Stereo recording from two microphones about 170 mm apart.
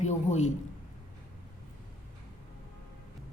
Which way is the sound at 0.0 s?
45° left (ahead or behind).